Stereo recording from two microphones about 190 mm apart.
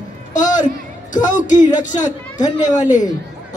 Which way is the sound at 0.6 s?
40° left (ahead or behind).